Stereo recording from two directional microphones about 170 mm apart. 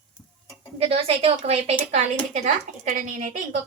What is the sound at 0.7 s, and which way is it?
A woman's voice, 35° right (ahead or behind).